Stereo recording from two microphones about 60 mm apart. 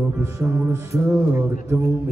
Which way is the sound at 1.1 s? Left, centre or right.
Right.